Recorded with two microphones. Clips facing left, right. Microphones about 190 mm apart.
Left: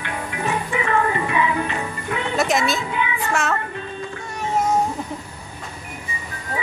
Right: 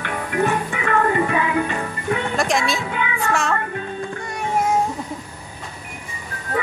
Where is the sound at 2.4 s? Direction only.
Centre (ahead or behind).